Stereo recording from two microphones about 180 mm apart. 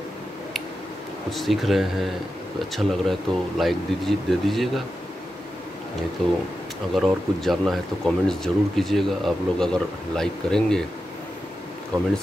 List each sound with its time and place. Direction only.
1.3 s speech: centre (ahead or behind)
6.2 s speech: centre (ahead or behind)